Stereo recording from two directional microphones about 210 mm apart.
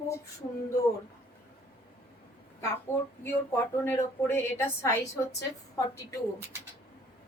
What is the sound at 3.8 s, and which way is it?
A woman's voice, 10° left (ahead or behind).